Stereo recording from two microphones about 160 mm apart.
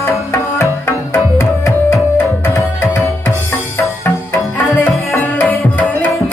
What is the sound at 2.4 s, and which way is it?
Tabla, 15° left (ahead or behind).